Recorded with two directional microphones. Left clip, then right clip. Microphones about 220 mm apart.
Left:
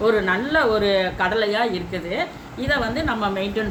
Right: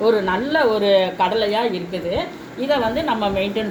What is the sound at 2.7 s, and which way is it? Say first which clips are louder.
Speech: right 3 dB; 45° left (ahead or behind).